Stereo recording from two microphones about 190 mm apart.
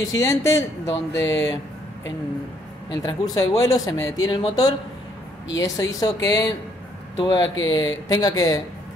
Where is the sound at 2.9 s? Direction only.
20° left (ahead or behind).